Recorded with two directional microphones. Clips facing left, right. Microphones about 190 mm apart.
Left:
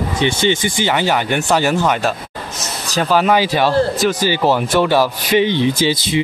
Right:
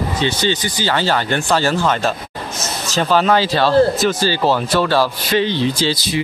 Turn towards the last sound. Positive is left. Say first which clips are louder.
# left 2 dB
turn(degrees=15)  # may be behind; listen again after turning